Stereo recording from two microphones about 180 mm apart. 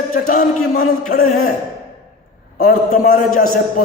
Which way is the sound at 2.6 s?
55° left (ahead or behind).